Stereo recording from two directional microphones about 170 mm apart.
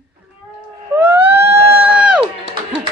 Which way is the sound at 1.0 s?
10° right (ahead or behind).